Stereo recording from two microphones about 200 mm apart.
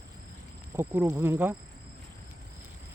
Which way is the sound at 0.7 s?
10° right (ahead or behind).